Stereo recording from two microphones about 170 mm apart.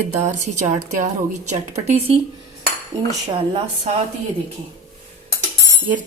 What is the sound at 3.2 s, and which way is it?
Speech, 40° right (ahead or behind).